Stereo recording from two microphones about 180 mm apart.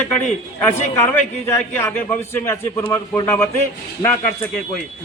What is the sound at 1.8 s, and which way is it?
A man's voice, 15° left (ahead or behind).